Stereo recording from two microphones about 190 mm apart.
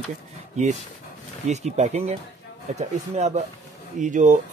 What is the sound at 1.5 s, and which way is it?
Speech, 35° right (ahead or behind).